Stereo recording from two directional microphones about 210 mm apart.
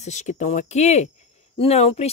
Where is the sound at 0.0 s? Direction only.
35° left (ahead or behind).